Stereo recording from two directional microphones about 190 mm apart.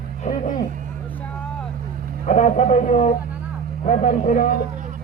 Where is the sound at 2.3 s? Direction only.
40° left (ahead or behind).